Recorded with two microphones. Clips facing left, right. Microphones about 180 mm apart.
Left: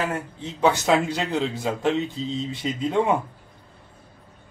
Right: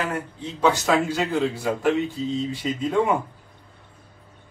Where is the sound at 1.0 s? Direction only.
20° left (ahead or behind).